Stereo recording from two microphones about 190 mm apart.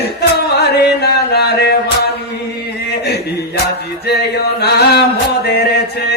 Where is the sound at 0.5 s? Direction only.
60° left (ahead or behind).